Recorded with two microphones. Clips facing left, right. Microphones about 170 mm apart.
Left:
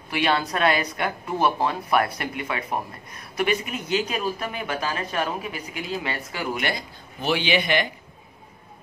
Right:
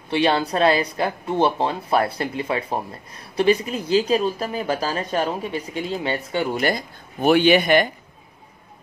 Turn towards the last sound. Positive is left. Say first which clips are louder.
# right 7 dB
turn(degrees=-45)  # may be behind; listen again after turning